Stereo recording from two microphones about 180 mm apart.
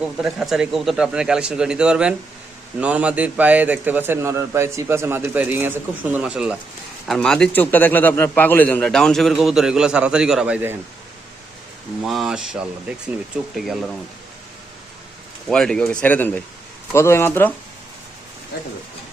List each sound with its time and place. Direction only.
0.0 s a man's voice: 5° right (ahead or behind)
12.0 s a man's voice: centre (ahead or behind)
15.4 s a man's voice: 5° left (ahead or behind)
18.5 s speech: 60° left (ahead or behind)